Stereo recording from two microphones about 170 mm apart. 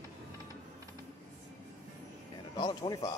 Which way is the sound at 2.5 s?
25° left (ahead or behind).